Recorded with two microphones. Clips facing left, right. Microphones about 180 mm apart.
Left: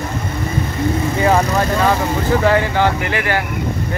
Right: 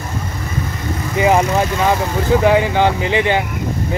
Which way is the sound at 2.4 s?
15° right (ahead or behind).